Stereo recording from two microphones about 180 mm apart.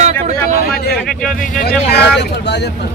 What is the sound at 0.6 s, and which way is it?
Speech, 60° left (ahead or behind).